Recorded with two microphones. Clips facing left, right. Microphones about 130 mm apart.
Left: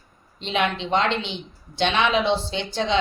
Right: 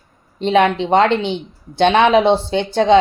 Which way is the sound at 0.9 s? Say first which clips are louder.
Right 9 dB; 50° right (ahead or behind).